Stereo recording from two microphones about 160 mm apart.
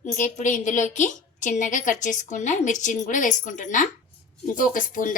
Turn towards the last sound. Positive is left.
turn(degrees=55)  # may be behind; listen again after turning